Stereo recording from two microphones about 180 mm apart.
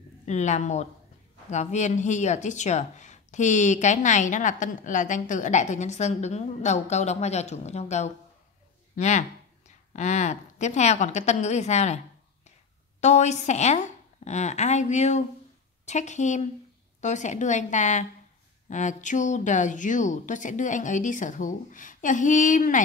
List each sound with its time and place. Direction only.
0.2 s speech: 40° left (ahead or behind)
13.0 s a woman's voice: 40° left (ahead or behind)